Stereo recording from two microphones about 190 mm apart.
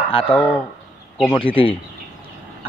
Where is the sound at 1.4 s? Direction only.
30° left (ahead or behind).